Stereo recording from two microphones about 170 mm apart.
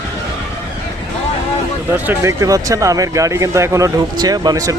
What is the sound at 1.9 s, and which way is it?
Speech, 10° right (ahead or behind).